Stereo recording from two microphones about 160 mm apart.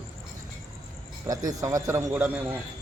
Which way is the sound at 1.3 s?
20° right (ahead or behind).